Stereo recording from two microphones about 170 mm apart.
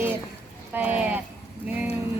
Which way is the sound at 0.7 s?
10° right (ahead or behind).